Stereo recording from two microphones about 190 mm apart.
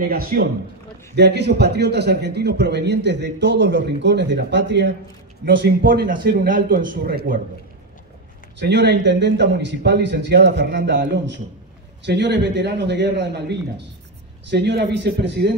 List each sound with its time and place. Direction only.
0.1 s a man's voice: 50° right (ahead or behind); by 4.9 s 65° right (ahead or behind)
5.4 s a man's voice: 50° right (ahead or behind)
8.5 s a man's voice: 65° right (ahead or behind)